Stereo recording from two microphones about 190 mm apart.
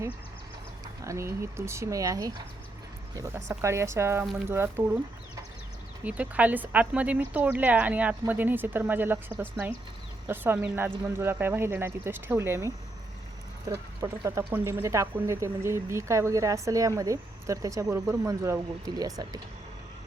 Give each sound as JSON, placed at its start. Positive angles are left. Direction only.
{"t": 1.0, "sound": "speech", "side_deg": -15}
{"t": 6.1, "sound": "speech", "side_deg": -5}